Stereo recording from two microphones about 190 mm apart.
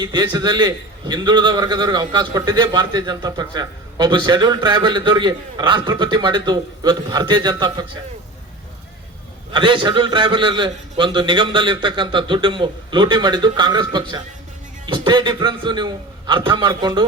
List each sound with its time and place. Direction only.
0.0 s a man's voice: 20° right (ahead or behind)
9.5 s a man's voice: 25° right (ahead or behind)